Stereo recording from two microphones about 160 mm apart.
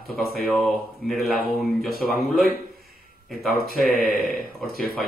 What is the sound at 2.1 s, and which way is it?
Speech, centre (ahead or behind).